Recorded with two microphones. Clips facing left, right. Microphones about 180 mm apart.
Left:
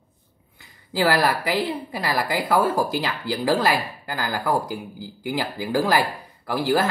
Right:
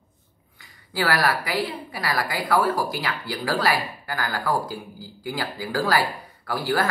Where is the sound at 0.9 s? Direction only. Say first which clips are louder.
Left 3 dB; 20° left (ahead or behind).